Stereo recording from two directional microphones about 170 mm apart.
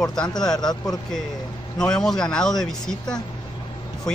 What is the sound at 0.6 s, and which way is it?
Speech, 25° left (ahead or behind).